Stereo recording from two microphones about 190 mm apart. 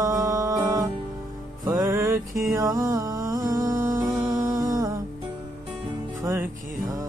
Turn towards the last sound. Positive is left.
turn(degrees=-15)  # may be behind; listen again after turning